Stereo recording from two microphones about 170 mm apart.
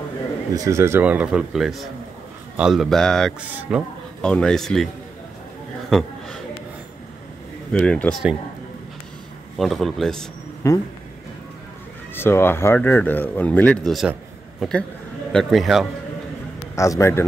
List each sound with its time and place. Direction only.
0.6 s speech: 15° right (ahead or behind); by 3.3 s 5° left (ahead or behind)
3.3 s speech: 5° right (ahead or behind)
4.2 s speech: 5° left (ahead or behind)
5.9 s a sound: centre (ahead or behind)
7.7 s speech: 5° left (ahead or behind)
9.6 s speech: centre (ahead or behind)
10.6 s speech: 15° left (ahead or behind)
12.2 s a man's voice: 15° left (ahead or behind)
16.7 s speech: 20° left (ahead or behind)